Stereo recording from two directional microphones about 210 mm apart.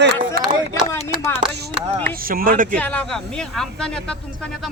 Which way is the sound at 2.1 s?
45° right (ahead or behind).